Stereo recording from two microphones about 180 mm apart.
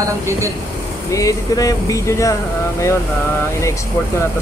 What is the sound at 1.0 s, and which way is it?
Speech, 20° left (ahead or behind).